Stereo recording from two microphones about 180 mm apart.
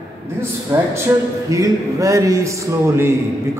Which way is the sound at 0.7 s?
20° right (ahead or behind).